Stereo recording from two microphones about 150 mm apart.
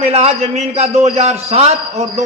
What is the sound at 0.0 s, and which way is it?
A man's voice, 45° right (ahead or behind).